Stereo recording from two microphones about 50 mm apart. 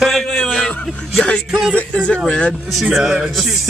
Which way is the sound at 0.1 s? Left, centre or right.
Centre.